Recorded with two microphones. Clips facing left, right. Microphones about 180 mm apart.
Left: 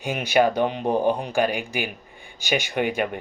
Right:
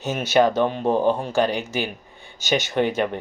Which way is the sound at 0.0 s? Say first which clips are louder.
Right 2 dB; 10° left (ahead or behind).